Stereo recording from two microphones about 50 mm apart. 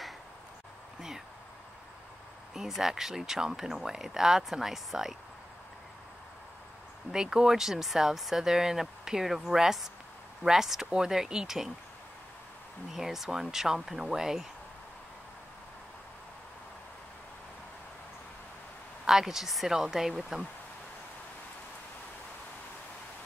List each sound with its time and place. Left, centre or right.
2.5 s speech: centre
7.1 s speech: centre
12.9 s speech: centre
19.0 s speech: centre